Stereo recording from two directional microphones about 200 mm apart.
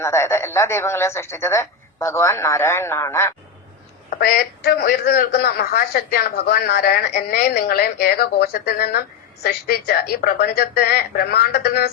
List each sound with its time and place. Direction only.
0.0 s speech: 15° left (ahead or behind)
4.1 s a man's voice: 50° left (ahead or behind)